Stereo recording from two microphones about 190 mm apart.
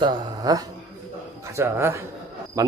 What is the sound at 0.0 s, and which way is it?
Speech, 25° right (ahead or behind).